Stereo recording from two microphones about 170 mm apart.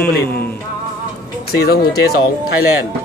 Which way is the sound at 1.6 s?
65° left (ahead or behind).